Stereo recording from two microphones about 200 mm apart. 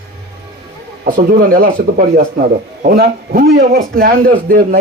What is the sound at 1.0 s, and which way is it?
Speech, 45° right (ahead or behind).